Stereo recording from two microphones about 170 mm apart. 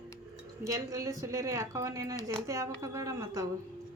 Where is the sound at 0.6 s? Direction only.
20° right (ahead or behind).